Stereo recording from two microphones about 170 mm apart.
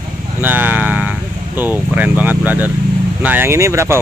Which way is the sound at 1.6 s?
10° right (ahead or behind).